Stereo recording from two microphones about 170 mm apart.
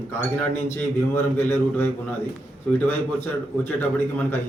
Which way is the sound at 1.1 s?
15° left (ahead or behind).